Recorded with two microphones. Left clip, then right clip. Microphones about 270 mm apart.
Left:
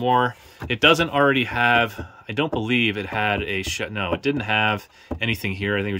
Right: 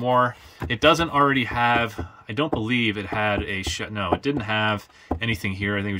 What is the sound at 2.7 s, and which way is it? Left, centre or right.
Speech, centre.